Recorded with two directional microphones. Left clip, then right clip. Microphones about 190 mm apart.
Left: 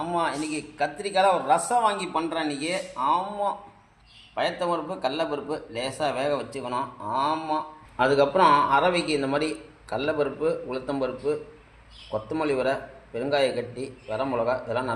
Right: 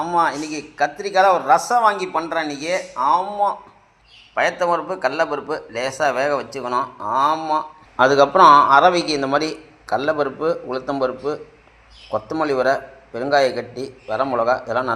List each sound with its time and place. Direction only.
0.0 s speech: 15° right (ahead or behind)
4.6 s speech: 15° right (ahead or behind)